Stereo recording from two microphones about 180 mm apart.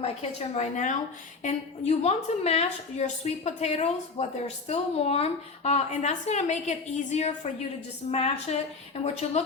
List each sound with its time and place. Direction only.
0.0 s a woman's voice: 35° left (ahead or behind)